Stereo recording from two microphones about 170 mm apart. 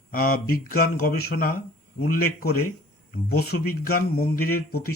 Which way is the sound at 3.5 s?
65° left (ahead or behind).